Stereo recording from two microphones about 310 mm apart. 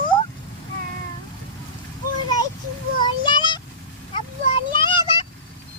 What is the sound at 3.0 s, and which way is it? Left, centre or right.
Child singing, centre.